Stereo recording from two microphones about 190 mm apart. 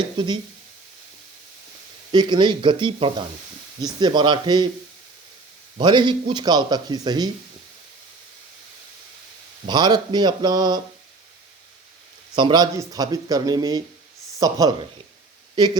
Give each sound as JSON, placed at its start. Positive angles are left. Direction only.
{"t": 0.2, "sound": "speech", "side_deg": -25}
{"t": 2.1, "sound": "speech", "side_deg": -25}
{"t": 5.7, "sound": "speech", "side_deg": -25}
{"t": 9.6, "sound": "speech", "side_deg": -20}
{"t": 12.4, "sound": "speech", "side_deg": -20}